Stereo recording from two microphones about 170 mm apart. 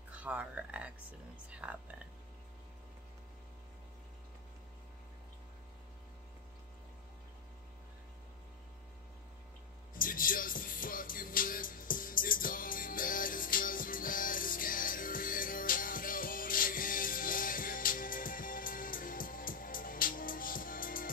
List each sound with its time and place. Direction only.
0.1 s speech: 10° right (ahead or behind)
9.9 s music: 55° left (ahead or behind)